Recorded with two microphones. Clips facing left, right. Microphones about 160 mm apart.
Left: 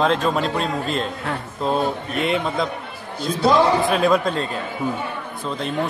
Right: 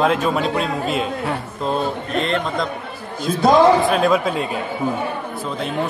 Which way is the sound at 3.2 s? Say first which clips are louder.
Right 3 dB; 45° right (ahead or behind).